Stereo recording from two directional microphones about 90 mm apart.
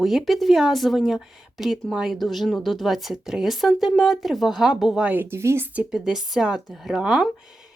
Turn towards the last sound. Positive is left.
turn(degrees=-5)  # may be behind; listen again after turning